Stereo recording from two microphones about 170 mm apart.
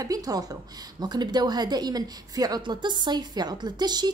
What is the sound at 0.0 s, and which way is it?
A woman's voice, 20° right (ahead or behind).